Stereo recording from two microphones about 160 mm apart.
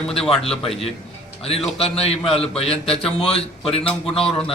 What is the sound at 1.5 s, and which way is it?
Speech, 40° left (ahead or behind).